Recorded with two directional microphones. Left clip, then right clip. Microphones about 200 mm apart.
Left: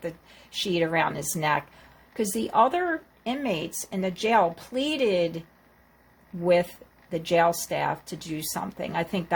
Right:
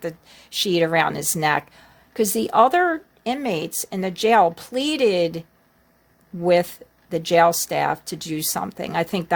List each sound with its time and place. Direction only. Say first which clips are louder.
0.5 s speech: right 6 dB; 55° right (ahead or behind)
6.4 s speech: right 4 dB; 50° right (ahead or behind)